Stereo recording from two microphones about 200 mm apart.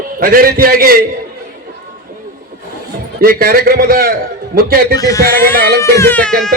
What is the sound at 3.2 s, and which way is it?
Speech, 45° right (ahead or behind).